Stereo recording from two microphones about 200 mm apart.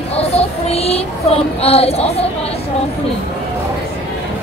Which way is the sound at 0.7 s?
30° left (ahead or behind).